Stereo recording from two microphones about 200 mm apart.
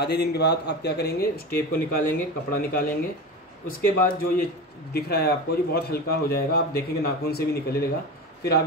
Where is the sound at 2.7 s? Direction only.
45° left (ahead or behind).